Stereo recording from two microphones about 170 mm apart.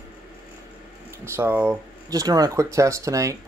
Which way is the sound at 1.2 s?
15° right (ahead or behind).